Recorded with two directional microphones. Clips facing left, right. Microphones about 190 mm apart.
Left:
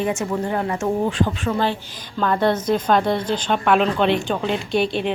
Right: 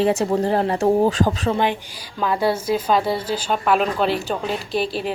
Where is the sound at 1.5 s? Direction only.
15° right (ahead or behind).